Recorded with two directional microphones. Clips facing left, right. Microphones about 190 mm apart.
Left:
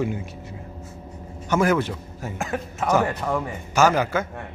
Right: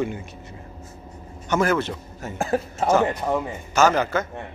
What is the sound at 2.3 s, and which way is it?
Speech, 35° right (ahead or behind).